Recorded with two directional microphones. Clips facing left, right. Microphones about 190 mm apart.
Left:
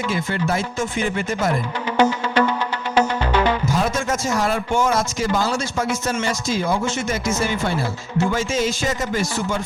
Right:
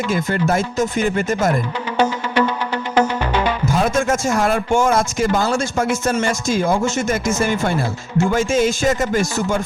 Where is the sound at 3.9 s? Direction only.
50° right (ahead or behind).